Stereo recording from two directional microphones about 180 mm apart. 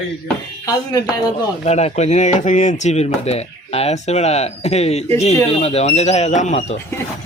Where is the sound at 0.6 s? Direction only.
20° left (ahead or behind).